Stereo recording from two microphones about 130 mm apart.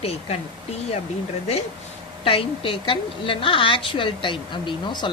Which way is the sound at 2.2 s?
45° left (ahead or behind).